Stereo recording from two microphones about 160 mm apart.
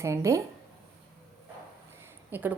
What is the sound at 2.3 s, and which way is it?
Speech, 10° right (ahead or behind).